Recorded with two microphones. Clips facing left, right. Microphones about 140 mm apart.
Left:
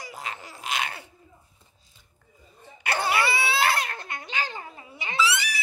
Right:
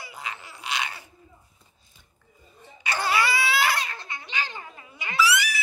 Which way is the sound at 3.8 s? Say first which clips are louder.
Left 2 dB; 50° left (ahead or behind).